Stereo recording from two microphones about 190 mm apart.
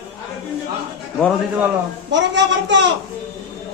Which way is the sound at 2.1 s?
70° right (ahead or behind).